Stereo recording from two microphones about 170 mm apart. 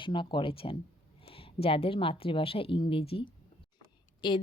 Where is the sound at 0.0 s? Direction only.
30° left (ahead or behind).